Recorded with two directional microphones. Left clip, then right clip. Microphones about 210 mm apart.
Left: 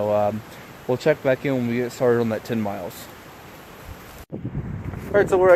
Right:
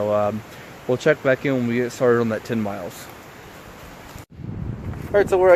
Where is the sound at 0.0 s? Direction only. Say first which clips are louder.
Even; 5° left (ahead or behind).